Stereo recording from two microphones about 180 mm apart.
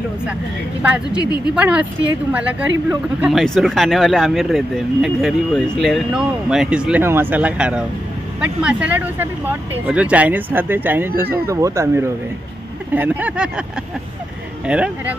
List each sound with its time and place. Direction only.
0.8 s speech: 5° right (ahead or behind)
1.2 s a woman's voice: 20° left (ahead or behind)
1.5 s speech: 5° right (ahead or behind)
2.9 s speech: 5° right (ahead or behind)
14.7 s speech: 5° right (ahead or behind)